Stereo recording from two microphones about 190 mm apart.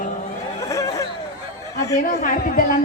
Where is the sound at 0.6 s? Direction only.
15° left (ahead or behind).